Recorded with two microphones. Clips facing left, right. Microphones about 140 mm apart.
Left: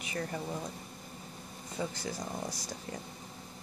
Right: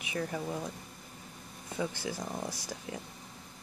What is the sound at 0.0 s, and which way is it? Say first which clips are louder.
Speech: right 2 dB; 5° right (ahead or behind).